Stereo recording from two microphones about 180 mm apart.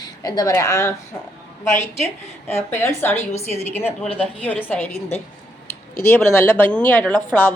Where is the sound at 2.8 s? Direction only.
10° left (ahead or behind).